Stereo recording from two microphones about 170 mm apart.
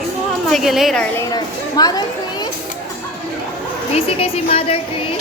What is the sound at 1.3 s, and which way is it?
Speech, 25° left (ahead or behind).